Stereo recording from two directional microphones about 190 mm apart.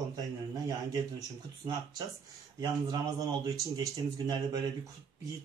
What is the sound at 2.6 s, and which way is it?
Speech, 20° right (ahead or behind).